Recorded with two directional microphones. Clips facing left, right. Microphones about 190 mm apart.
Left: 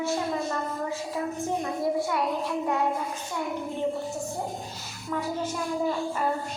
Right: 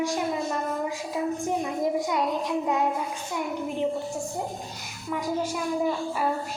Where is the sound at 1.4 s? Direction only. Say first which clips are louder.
Right 1 dB; 15° right (ahead or behind).